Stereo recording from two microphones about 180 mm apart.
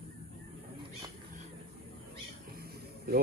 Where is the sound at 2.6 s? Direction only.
60° right (ahead or behind).